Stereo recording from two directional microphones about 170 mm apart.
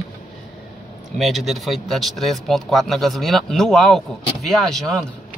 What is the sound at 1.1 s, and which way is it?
Speech, centre (ahead or behind).